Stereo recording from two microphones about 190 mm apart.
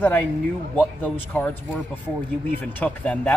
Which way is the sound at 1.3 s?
10° left (ahead or behind).